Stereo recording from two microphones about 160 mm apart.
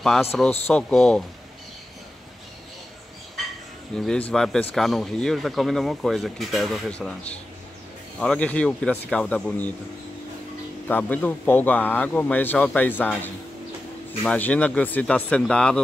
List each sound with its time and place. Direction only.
0.3 s speech: 5° left (ahead or behind)
3.9 s speech: 5° left (ahead or behind)
10.9 s speech: 10° left (ahead or behind)